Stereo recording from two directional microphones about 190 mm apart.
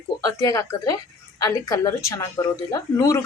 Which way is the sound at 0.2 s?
20° left (ahead or behind).